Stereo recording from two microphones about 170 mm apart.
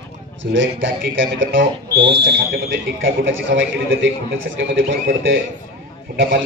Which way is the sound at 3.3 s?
90° right.